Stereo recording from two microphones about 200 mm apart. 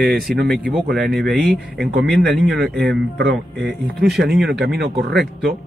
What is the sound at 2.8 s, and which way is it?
Speech, 60° right (ahead or behind).